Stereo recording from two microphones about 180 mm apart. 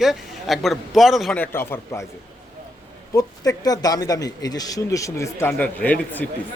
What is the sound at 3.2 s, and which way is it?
Speech, 20° left (ahead or behind).